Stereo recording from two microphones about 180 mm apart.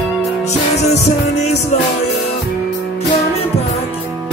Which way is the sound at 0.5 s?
40° left (ahead or behind).